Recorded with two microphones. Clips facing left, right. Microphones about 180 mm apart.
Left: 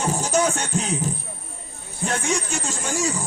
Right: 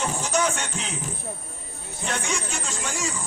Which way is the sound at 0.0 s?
40° left (ahead or behind).